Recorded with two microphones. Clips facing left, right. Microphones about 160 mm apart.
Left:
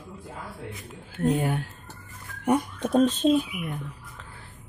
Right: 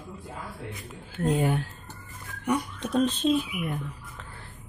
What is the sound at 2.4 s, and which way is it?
Speech, 50° left (ahead or behind).